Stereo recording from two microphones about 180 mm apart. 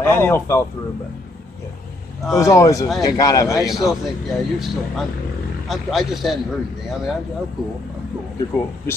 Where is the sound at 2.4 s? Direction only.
20° left (ahead or behind).